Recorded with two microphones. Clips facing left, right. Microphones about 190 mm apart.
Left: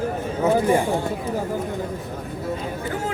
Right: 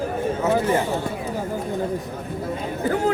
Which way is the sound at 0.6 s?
15° left (ahead or behind).